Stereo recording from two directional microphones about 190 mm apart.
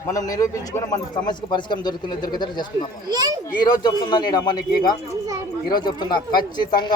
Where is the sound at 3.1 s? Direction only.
20° right (ahead or behind).